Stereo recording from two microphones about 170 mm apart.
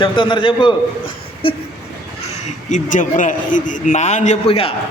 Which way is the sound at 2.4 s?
50° left (ahead or behind).